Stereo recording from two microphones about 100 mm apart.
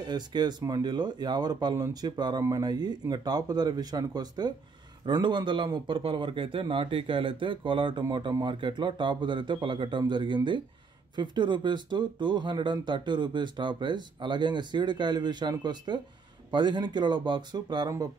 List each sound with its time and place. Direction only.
0.1 s speech: 45° right (ahead or behind)